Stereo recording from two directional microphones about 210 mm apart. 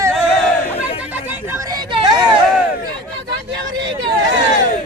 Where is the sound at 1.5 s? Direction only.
15° right (ahead or behind).